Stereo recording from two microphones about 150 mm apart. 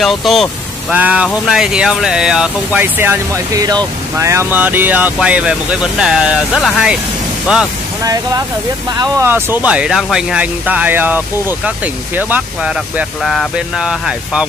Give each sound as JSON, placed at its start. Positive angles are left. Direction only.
{"t": 0.0, "sound": "speech", "side_deg": 0}
{"t": 8.0, "sound": "speech", "side_deg": -25}
{"t": 13.2, "sound": "speech", "side_deg": 0}